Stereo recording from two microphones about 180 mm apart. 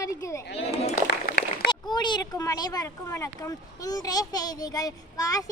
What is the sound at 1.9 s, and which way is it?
Speech, 25° left (ahead or behind).